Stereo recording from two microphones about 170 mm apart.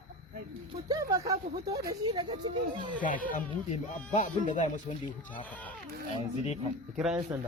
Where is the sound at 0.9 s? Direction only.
20° right (ahead or behind).